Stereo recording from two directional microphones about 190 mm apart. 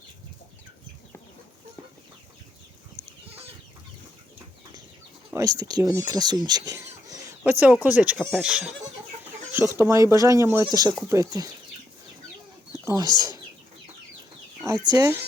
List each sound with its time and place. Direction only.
5.3 s speech: 20° right (ahead or behind)
12.8 s speech: 15° right (ahead or behind)
14.7 s speech: 15° right (ahead or behind)